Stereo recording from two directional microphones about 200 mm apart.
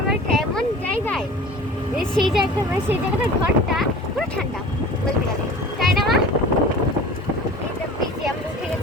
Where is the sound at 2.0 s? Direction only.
Centre (ahead or behind).